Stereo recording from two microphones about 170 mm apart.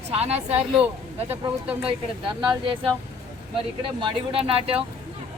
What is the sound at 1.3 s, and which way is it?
Speech, 10° right (ahead or behind).